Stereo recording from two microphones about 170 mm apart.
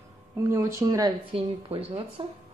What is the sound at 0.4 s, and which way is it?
Speech, 15° right (ahead or behind).